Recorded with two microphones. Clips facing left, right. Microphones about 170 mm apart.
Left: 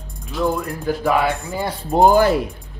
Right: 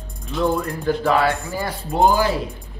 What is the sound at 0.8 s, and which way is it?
Music, 10° left (ahead or behind).